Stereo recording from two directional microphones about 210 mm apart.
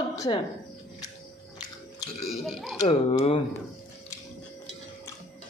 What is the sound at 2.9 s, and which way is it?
Speech, 30° left (ahead or behind).